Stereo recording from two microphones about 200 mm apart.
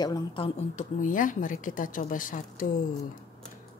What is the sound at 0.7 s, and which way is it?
A woman's voice, 40° left (ahead or behind).